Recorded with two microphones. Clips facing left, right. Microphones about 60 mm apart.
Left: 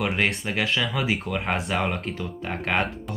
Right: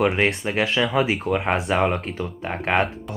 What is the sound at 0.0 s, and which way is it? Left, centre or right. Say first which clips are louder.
Speech: right 5 dB; right.